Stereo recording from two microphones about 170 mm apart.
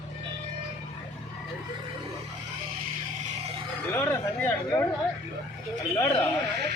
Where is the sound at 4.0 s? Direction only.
10° left (ahead or behind).